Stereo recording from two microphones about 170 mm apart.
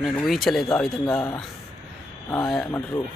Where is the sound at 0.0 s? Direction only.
Centre (ahead or behind).